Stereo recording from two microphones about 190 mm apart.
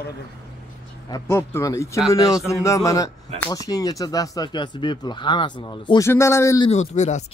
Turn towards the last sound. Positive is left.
turn(degrees=40)  # may be behind; listen again after turning